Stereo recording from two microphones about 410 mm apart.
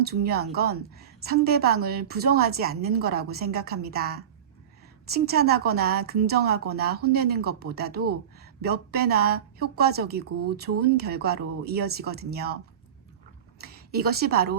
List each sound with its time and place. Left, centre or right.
0.0 s a woman's voice: right
5.1 s a woman's voice: right
13.6 s a woman's voice: right